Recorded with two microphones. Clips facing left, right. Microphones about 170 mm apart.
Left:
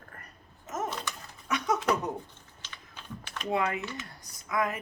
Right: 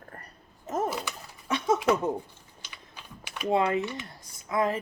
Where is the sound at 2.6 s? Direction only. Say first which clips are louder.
Even; 10° right (ahead or behind).